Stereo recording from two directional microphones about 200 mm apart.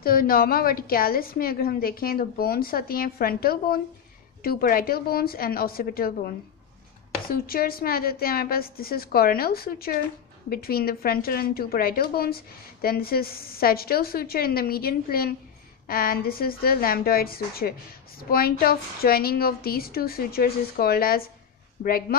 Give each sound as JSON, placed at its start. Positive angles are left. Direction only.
{"t": 0.0, "sound": "a woman's voice", "side_deg": 45}